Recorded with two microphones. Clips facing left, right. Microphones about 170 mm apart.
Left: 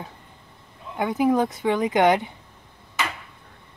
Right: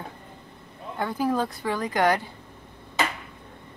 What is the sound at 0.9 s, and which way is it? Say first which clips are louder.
Speech: left 5 dB; 15° left (ahead or behind).